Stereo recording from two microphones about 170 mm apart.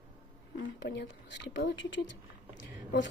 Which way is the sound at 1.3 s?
85° left.